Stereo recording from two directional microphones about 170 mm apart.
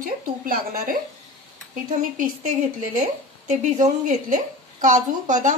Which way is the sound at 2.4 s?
45° right (ahead or behind).